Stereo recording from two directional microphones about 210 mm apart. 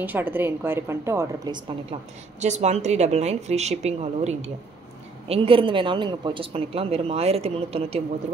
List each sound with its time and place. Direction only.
0.0 s a woman's voice: 10° right (ahead or behind)
2.4 s a woman's voice: 35° right (ahead or behind)